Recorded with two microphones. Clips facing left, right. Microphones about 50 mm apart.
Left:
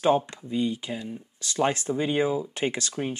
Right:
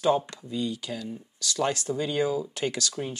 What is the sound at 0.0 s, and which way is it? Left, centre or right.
Speech, left.